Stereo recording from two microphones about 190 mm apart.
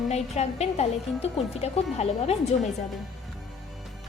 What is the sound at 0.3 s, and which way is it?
Speech, 35° left (ahead or behind).